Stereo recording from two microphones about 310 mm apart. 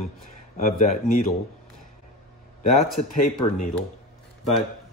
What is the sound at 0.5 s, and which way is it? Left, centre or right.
Speech, left.